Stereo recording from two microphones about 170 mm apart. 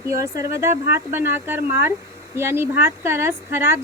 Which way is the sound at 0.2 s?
15° right (ahead or behind).